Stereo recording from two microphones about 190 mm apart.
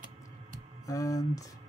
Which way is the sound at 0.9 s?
15° left (ahead or behind).